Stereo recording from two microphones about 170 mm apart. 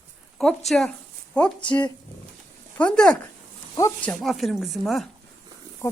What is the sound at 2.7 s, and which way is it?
Speech, 5° left (ahead or behind).